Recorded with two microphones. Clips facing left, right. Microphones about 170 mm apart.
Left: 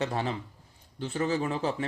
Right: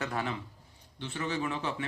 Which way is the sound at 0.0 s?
30° left (ahead or behind).